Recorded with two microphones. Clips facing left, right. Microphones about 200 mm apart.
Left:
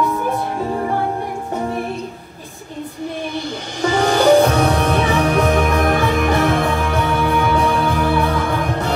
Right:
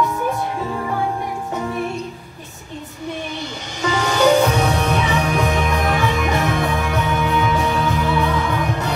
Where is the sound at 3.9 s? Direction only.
50° left (ahead or behind).